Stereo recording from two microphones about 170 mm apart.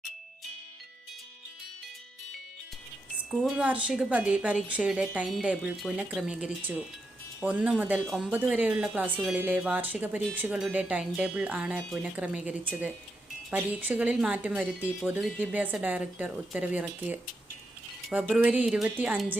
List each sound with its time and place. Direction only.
3.3 s speech: 5° right (ahead or behind)